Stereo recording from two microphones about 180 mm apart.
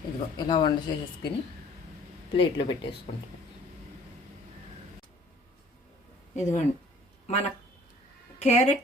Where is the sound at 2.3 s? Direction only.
30° left (ahead or behind).